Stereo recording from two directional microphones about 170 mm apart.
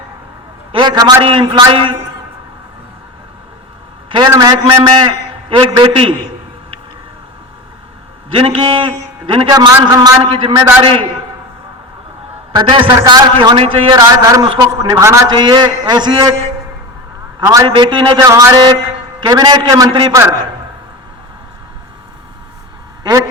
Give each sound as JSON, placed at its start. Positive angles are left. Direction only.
{"t": 0.7, "sound": "a man's voice", "side_deg": -25}
{"t": 4.3, "sound": "a man's voice", "side_deg": -25}
{"t": 8.3, "sound": "a man's voice", "side_deg": -30}
{"t": 12.5, "sound": "a man's voice", "side_deg": -30}
{"t": 14.4, "sound": "a man's voice", "side_deg": -30}
{"t": 14.7, "sound": "a man's voice", "side_deg": -20}
{"t": 17.4, "sound": "a man's voice", "side_deg": -20}